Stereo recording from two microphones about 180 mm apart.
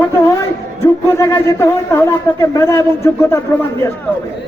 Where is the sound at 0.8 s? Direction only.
15° left (ahead or behind).